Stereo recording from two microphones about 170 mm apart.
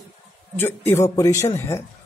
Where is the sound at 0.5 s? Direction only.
15° left (ahead or behind).